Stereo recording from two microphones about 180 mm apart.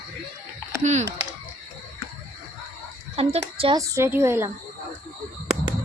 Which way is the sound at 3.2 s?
30° right (ahead or behind).